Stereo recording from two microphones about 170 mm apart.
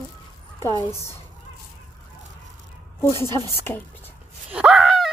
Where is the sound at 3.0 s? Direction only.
15° left (ahead or behind).